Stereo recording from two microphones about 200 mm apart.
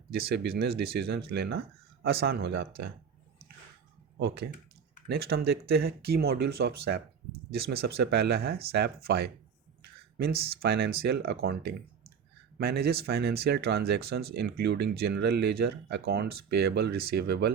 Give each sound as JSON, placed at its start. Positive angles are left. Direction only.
{"t": 0.3, "sound": "speech", "side_deg": -55}
{"t": 5.0, "sound": "speech", "side_deg": -50}